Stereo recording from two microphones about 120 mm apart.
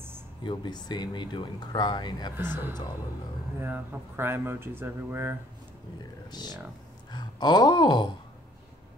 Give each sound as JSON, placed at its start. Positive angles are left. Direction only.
{"t": 0.4, "sound": "speech", "side_deg": 40}
{"t": 2.3, "sound": "speech", "side_deg": -15}
{"t": 6.3, "sound": "speech", "side_deg": 35}
{"t": 7.1, "sound": "a sound", "side_deg": 35}